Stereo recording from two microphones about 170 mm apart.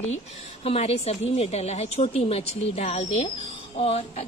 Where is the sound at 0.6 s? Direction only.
35° left (ahead or behind).